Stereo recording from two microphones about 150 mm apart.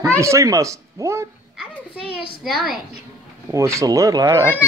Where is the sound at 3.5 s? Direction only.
20° right (ahead or behind).